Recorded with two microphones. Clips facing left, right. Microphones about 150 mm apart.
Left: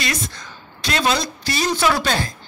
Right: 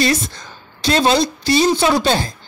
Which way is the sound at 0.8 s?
30° right (ahead or behind).